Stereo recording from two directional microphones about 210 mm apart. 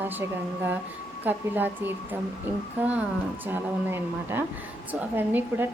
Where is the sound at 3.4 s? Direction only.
10° right (ahead or behind).